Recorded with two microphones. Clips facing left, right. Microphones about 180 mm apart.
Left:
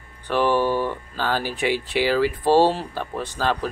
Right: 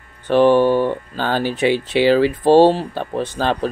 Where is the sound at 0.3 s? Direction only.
25° right (ahead or behind).